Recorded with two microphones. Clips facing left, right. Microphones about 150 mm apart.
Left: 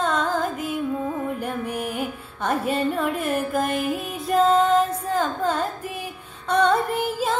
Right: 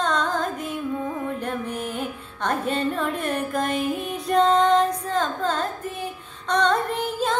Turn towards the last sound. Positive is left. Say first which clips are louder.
# left 1 dB
turn(degrees=5)  # may be behind; listen again after turning